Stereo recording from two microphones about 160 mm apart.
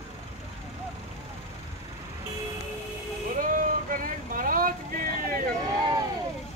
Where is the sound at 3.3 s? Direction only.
60° right (ahead or behind).